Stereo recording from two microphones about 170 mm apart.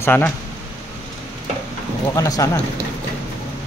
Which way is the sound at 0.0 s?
10° left (ahead or behind).